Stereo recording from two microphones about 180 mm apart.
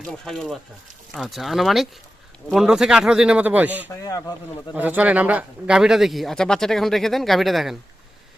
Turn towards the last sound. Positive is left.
turn(degrees=0)  # may be behind; listen again after turning